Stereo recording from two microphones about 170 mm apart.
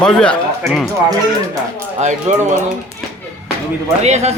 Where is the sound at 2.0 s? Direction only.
45° right (ahead or behind).